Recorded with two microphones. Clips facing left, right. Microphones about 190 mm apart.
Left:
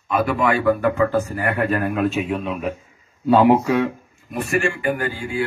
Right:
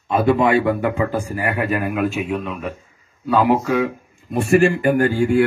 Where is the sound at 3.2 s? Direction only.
25° left (ahead or behind).